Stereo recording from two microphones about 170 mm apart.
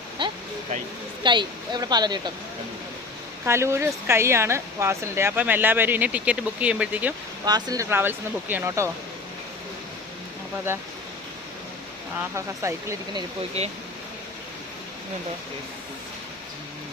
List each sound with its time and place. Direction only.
0.2 s a sound: 30° right (ahead or behind)
1.2 s speech: 25° right (ahead or behind)
3.4 s speech: 15° right (ahead or behind)
7.4 s speech: 20° right (ahead or behind)
12.6 s speech: 15° right (ahead or behind)
13.6 s speech: 35° right (ahead or behind)